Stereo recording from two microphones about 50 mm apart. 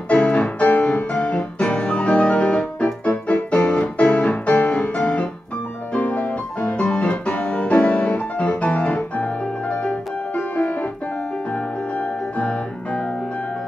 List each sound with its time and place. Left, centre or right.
0.1 s music: left
8.6 s piano: left
12.0 s music: left